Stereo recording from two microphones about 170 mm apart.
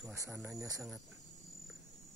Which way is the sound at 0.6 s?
20° right (ahead or behind).